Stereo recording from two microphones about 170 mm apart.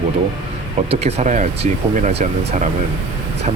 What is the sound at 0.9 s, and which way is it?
Speech, 40° right (ahead or behind).